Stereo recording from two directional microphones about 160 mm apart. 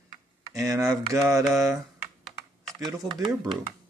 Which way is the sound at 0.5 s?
20° right (ahead or behind).